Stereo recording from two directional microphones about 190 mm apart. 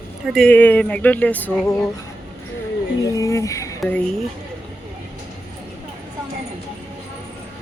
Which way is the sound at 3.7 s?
5° left (ahead or behind).